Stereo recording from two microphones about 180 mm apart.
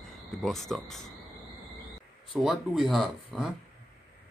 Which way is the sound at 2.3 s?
Centre (ahead or behind).